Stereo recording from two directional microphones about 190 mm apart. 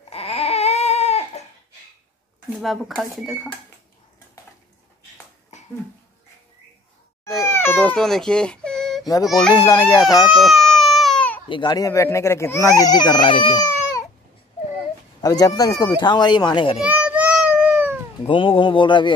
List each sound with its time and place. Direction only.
0.1 s baby cry: 30° left (ahead or behind)
2.5 s speech: centre (ahead or behind)
7.4 s baby cry: 10° left (ahead or behind)
9.2 s speech: centre (ahead or behind)
9.5 s speech: 20° left (ahead or behind)
10.3 s baby cry: centre (ahead or behind)
11.4 s speech: 25° left (ahead or behind)
15.2 s speech: 20° left (ahead or behind)
17.0 s cat: 10° right (ahead or behind)
18.2 s speech: 30° left (ahead or behind)